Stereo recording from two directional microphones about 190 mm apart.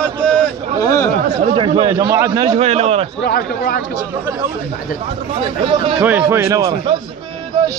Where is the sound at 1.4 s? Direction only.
30° right (ahead or behind).